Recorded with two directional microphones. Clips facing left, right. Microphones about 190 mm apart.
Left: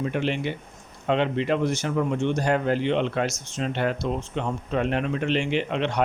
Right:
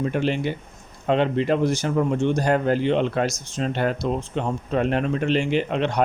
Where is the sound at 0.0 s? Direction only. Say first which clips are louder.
Right 3 dB; 40° right (ahead or behind).